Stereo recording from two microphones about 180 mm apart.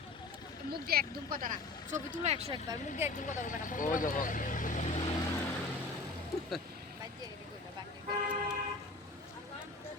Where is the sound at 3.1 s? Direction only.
45° left (ahead or behind).